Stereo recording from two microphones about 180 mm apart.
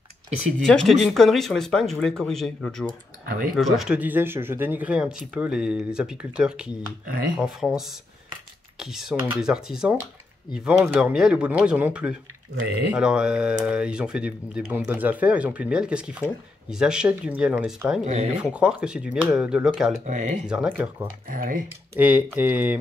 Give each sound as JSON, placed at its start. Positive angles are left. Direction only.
{"t": 0.7, "sound": "speech", "side_deg": 5}
{"t": 2.9, "sound": "speech", "side_deg": -55}
{"t": 3.5, "sound": "speech", "side_deg": 0}
{"t": 18.0, "sound": "speech", "side_deg": -40}
{"t": 18.3, "sound": "speech", "side_deg": -5}
{"t": 20.1, "sound": "speech", "side_deg": -40}
{"t": 20.4, "sound": "speech", "side_deg": -5}
{"t": 21.3, "sound": "speech", "side_deg": -50}
{"t": 21.9, "sound": "speech", "side_deg": -10}